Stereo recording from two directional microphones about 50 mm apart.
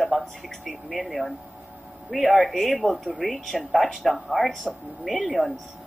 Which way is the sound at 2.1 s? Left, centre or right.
Centre.